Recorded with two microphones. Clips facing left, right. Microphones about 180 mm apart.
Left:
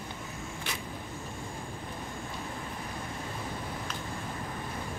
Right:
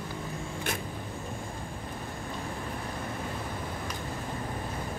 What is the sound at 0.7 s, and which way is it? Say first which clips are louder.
Vehicle: right 6 dB; 50° right (ahead or behind).